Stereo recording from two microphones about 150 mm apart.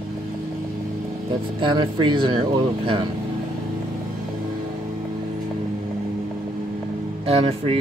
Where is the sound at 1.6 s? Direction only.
30° right (ahead or behind).